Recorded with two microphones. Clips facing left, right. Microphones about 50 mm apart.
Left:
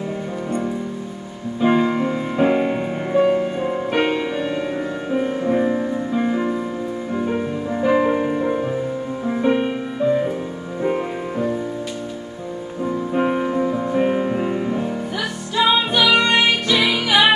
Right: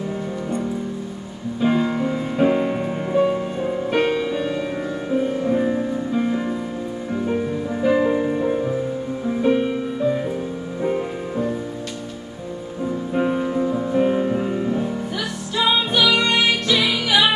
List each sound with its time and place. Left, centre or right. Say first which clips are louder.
1.6 s music: left 2 dB; centre
7.9 s music: left 1 dB; left
9.5 s music: even; left
9.9 s music: left 6 dB; centre
13.4 s music: left 1 dB; left